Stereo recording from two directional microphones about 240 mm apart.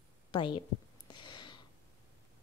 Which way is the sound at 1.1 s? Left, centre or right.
Centre.